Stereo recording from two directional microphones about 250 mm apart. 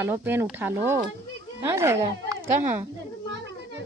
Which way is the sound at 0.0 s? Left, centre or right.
Centre.